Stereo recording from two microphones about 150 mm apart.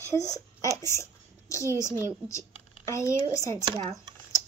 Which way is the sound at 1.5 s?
20° left (ahead or behind).